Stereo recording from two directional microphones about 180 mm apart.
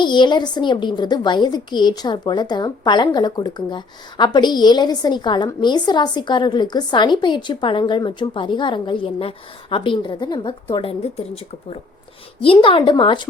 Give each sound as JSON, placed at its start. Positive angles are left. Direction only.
{"t": 0.0, "sound": "a woman's voice", "side_deg": 25}
{"t": 12.4, "sound": "a woman's voice", "side_deg": 30}